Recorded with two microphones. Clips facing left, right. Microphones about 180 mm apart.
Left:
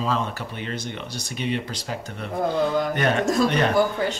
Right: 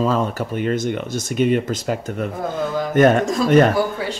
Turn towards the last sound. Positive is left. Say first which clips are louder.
# right 6 dB
turn(degrees=-45)  # may be behind; listen again after turning